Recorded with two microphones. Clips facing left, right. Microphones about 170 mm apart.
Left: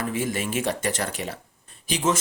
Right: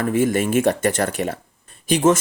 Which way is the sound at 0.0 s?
55° right (ahead or behind).